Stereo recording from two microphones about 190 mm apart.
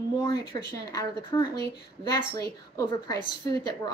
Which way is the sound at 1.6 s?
20° left (ahead or behind).